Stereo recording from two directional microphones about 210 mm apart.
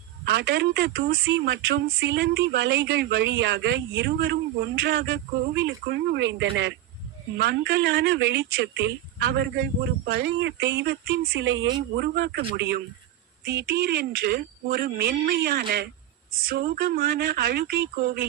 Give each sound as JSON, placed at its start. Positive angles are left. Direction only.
{"t": 0.3, "sound": "a woman's voice", "side_deg": -50}